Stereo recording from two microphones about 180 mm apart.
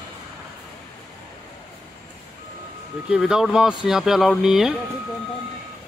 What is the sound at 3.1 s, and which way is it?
Speech, 5° right (ahead or behind).